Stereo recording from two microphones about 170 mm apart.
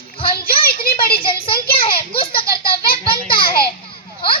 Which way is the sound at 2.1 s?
30° left (ahead or behind).